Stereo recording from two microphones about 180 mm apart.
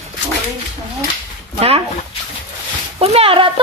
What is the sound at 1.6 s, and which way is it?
Speech, 35° right (ahead or behind).